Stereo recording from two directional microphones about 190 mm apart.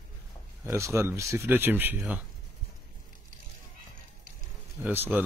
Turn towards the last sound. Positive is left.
turn(degrees=-10)  # may be behind; listen again after turning